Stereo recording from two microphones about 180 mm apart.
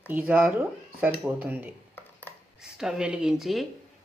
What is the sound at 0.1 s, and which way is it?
Speech, 10° right (ahead or behind).